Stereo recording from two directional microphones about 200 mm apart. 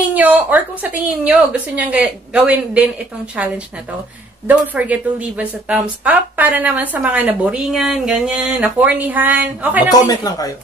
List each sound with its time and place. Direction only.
0.1 s a sound: 10° right (ahead or behind)
1.2 s a woman's voice: 5° right (ahead or behind)
4.5 s a woman's voice: 5° right (ahead or behind)
10.0 s speech: 20° left (ahead or behind)